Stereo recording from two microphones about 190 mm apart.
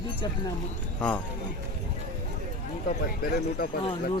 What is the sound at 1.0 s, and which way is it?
Speech, 10° left (ahead or behind).